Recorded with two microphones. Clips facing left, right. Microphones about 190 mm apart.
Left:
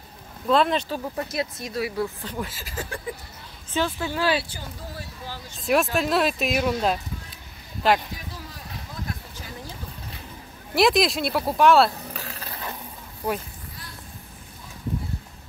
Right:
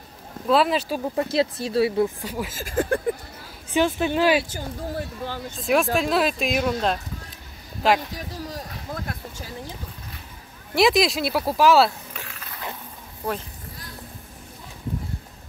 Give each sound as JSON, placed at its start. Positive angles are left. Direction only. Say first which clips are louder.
{"t": 0.5, "sound": "speech", "louder": "right 1 dB", "side_deg": -5}
{"t": 1.1, "sound": "speech", "louder": "right 6 dB", "side_deg": -30}
{"t": 2.2, "sound": "speech", "louder": "right 2 dB", "side_deg": -5}
{"t": 2.5, "sound": "speech", "louder": "right 11 dB", "side_deg": -50}
{"t": 3.7, "sound": "speech", "louder": "right 5 dB", "side_deg": -20}
{"t": 4.5, "sound": "speech", "louder": "right 7 dB", "side_deg": -50}
{"t": 5.6, "sound": "speech", "louder": "right 1 dB", "side_deg": 0}
{"t": 8.4, "sound": "a sound", "louder": "right 6 dB", "side_deg": -40}
{"t": 10.7, "sound": "speech", "louder": "right 1 dB", "side_deg": 0}
{"t": 12.1, "sound": "mechanisms", "louder": "left 3 dB", "side_deg": 35}